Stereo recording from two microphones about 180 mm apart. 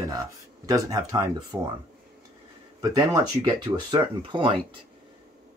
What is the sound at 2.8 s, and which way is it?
Speech, 20° right (ahead or behind).